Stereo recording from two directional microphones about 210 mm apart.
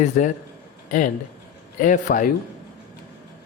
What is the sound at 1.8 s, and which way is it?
Speech, 40° left (ahead or behind).